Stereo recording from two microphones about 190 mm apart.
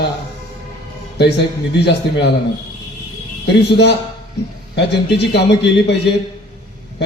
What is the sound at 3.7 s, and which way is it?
A man's voice, 65° left (ahead or behind).